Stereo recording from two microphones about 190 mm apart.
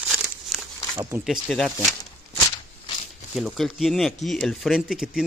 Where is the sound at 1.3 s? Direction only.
Centre (ahead or behind).